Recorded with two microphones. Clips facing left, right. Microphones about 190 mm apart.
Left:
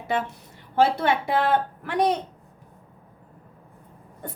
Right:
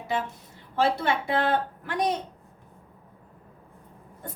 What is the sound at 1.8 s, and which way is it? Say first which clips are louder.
Speech: left 4 dB; 60° left (ahead or behind).